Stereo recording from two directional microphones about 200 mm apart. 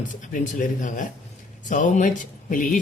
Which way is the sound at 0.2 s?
40° left (ahead or behind).